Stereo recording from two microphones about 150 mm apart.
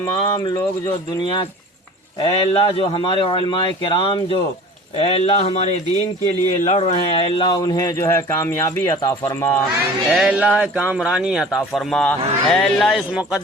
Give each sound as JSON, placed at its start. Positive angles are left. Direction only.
{"t": 0.1, "sound": "speech", "side_deg": 30}
{"t": 2.2, "sound": "speech", "side_deg": 40}
{"t": 7.4, "sound": "speech", "side_deg": 30}
{"t": 10.1, "sound": "a man's voice", "side_deg": -5}